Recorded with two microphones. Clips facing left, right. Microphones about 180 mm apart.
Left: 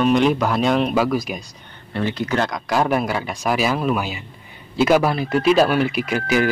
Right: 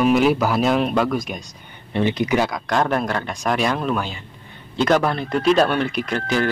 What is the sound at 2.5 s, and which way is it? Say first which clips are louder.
Speech: left 1 dB; 5° left (ahead or behind).